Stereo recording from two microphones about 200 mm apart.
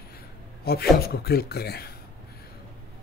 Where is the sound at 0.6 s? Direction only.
50° left (ahead or behind).